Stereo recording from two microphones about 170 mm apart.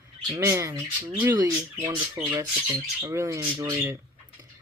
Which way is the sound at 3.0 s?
15° right (ahead or behind).